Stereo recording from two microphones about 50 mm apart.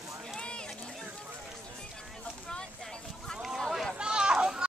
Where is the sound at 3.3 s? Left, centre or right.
Centre.